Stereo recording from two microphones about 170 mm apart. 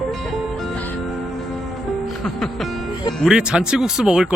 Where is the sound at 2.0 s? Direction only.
Centre (ahead or behind).